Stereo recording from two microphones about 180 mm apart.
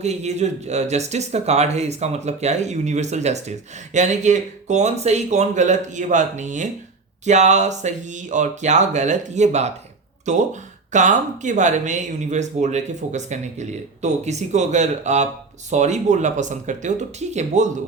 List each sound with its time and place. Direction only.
0.0 s speech: 40° right (ahead or behind)